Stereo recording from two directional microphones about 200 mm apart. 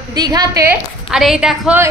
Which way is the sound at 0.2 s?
20° right (ahead or behind).